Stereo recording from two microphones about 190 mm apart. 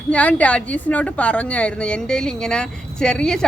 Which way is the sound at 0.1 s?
5° left (ahead or behind).